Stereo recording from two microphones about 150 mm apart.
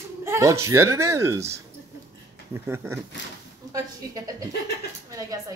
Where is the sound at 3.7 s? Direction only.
25° right (ahead or behind).